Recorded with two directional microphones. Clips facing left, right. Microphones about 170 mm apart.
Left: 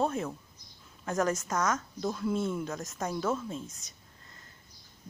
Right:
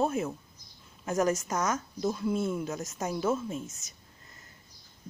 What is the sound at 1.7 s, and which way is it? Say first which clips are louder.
Speech: right 1 dB; 5° right (ahead or behind).